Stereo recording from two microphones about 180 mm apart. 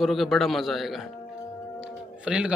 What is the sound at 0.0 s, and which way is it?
A man's voice, centre (ahead or behind).